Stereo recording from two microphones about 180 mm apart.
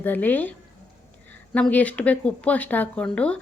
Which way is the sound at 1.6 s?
5° left (ahead or behind).